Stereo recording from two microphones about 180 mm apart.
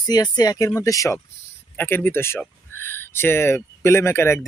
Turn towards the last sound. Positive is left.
turn(degrees=15)  # may be behind; listen again after turning